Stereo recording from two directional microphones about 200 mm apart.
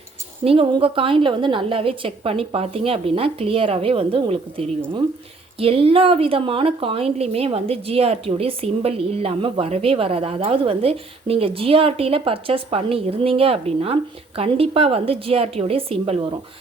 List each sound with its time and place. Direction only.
0.4 s speech: 25° right (ahead or behind)